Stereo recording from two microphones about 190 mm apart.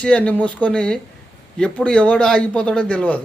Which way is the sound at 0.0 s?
5° left (ahead or behind).